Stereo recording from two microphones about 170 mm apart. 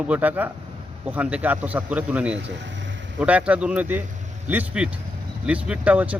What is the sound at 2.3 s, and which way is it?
Vehicle, 90° right.